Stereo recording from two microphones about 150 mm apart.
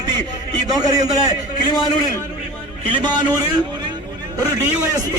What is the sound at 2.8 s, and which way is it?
Speech, 30° right (ahead or behind).